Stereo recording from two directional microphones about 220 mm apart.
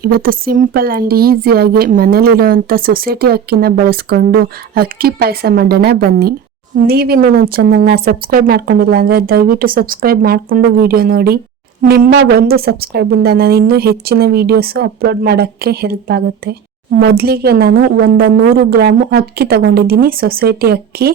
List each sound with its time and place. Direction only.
0.0 s a woman's voice: 40° right (ahead or behind)